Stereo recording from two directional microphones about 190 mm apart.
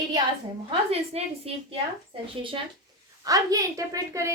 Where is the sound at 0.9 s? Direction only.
30° right (ahead or behind).